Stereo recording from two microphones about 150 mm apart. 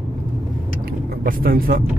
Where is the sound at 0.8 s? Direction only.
75° right (ahead or behind).